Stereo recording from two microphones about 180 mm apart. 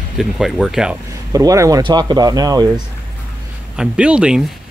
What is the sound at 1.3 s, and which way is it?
Speech, 20° right (ahead or behind).